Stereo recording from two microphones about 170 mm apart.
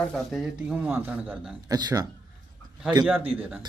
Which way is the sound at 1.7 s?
25° right (ahead or behind).